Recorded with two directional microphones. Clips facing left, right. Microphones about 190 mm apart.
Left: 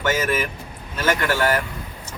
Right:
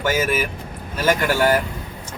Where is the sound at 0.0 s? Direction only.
10° right (ahead or behind).